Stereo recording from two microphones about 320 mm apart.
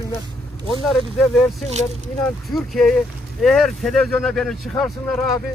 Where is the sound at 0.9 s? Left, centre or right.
Centre.